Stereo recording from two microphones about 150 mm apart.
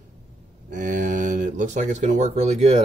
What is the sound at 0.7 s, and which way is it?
Speech, 65° right (ahead or behind).